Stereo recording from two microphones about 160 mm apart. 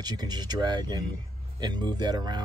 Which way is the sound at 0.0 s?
25° right (ahead or behind).